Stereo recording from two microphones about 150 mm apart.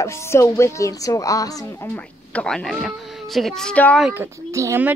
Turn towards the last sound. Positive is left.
turn(degrees=-20)  # may be behind; listen again after turning